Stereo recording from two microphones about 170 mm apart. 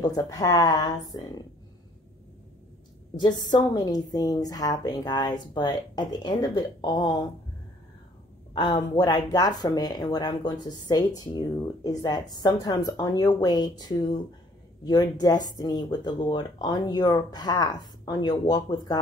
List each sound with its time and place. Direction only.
0.0 s a woman's voice: 20° left (ahead or behind)
3.2 s a woman's voice: 25° left (ahead or behind)
8.5 s a woman's voice: 25° left (ahead or behind)